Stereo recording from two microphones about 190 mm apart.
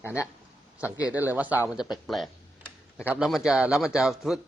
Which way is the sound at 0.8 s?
5° right (ahead or behind).